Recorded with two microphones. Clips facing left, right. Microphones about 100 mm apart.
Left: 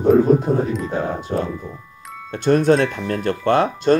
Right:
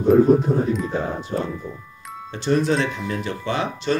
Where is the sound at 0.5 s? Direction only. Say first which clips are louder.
Left 2 dB; 50° left (ahead or behind).